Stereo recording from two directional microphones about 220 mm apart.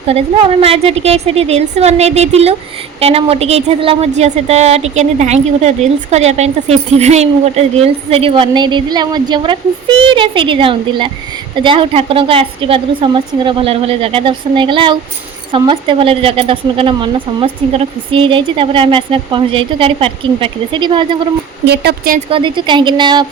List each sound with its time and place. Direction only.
0.1 s a woman's voice: 25° right (ahead or behind)
21.7 s speech: 45° right (ahead or behind)
22.3 s a woman's voice: 20° right (ahead or behind)